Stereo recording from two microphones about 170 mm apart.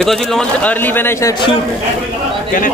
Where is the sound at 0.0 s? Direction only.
Centre (ahead or behind).